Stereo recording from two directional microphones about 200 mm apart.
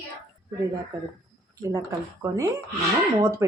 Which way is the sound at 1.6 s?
15° right (ahead or behind).